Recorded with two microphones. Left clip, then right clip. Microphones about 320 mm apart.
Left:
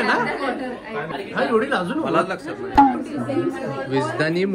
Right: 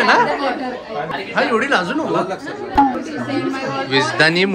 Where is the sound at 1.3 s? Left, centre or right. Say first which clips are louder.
Right 4 dB; centre.